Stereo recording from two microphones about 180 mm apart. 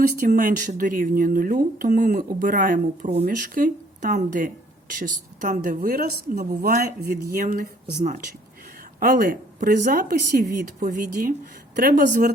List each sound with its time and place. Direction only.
0.2 s speech: 45° right (ahead or behind)
9.0 s speech: 60° right (ahead or behind)